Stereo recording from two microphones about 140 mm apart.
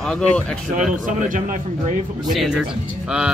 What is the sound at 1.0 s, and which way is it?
Speech, 70° right (ahead or behind).